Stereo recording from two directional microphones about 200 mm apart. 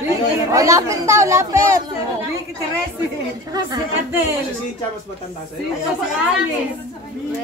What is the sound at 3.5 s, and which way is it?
Speech, 15° right (ahead or behind).